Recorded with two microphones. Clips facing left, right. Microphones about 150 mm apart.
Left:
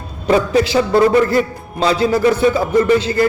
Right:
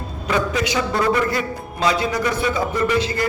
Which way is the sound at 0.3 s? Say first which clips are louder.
Left 7 dB; 30° left (ahead or behind).